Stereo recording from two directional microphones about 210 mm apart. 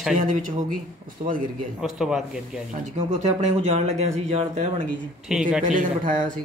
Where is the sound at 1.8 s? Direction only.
Centre (ahead or behind).